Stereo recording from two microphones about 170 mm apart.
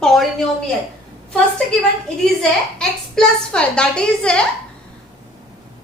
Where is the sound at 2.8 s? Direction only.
5° left (ahead or behind).